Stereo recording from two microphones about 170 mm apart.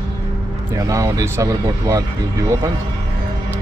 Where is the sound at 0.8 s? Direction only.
20° right (ahead or behind).